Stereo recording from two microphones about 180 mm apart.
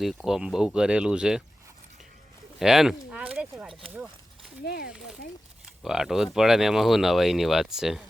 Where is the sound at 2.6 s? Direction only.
5° right (ahead or behind).